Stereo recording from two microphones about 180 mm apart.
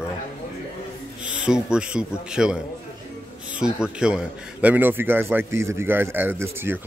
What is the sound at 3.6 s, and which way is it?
A man's voice, 5° right (ahead or behind).